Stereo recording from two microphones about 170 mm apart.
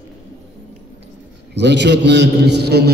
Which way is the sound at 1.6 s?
90° right.